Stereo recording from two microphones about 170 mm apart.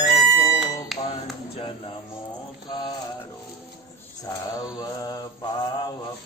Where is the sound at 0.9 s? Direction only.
Centre (ahead or behind).